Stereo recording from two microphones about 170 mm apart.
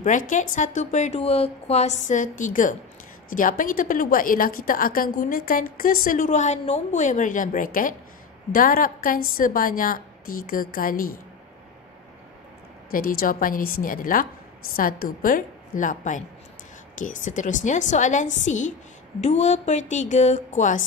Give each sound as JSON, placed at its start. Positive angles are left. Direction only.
{"t": 0.0, "sound": "a woman's voice", "side_deg": 50}
{"t": 12.9, "sound": "a woman's voice", "side_deg": 55}